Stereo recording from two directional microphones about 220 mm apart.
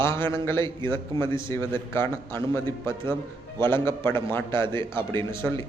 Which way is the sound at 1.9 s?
10° left (ahead or behind).